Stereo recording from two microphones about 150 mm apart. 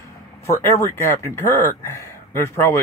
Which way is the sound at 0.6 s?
15° left (ahead or behind).